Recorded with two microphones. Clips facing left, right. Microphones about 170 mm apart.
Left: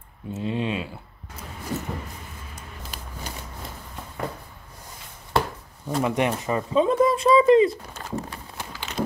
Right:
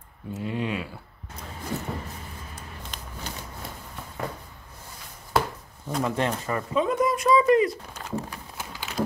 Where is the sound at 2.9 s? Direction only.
10° left (ahead or behind).